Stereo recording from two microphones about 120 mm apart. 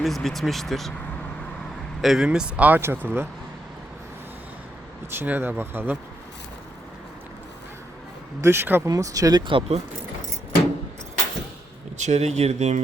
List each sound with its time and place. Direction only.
0.0 s speech: centre (ahead or behind)
2.0 s speech: 5° right (ahead or behind)
5.1 s speech: 15° right (ahead or behind)
8.4 s speech: 20° right (ahead or behind)
8.9 s speech: 30° right (ahead or behind)
9.5 s speech: 55° right (ahead or behind)
11.9 s speech: 75° right (ahead or behind)